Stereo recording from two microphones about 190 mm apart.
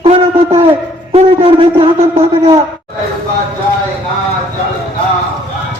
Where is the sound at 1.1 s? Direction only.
30° right (ahead or behind).